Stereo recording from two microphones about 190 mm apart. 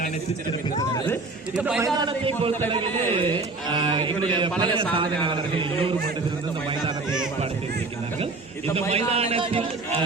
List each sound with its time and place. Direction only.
1.5 s a man's voice: 5° right (ahead or behind)
1.8 s speech: 25° right (ahead or behind)
8.9 s a man's voice: 30° right (ahead or behind)